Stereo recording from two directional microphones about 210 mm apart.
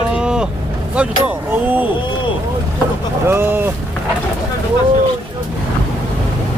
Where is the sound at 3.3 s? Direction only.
10° right (ahead or behind).